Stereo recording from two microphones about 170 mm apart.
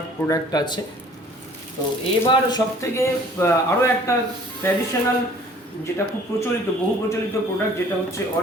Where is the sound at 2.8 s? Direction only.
15° left (ahead or behind).